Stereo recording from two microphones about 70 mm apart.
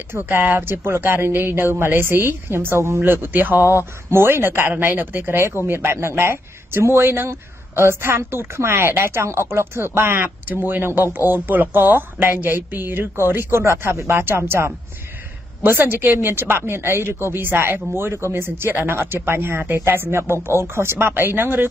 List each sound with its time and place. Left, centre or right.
0.1 s speech: right